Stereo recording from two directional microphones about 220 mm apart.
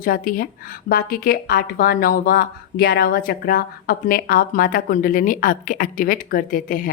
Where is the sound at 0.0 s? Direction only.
40° left (ahead or behind).